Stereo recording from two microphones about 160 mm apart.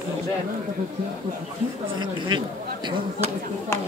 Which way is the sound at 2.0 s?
25° right (ahead or behind).